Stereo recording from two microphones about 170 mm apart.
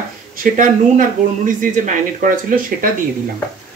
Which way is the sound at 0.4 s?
50° right (ahead or behind).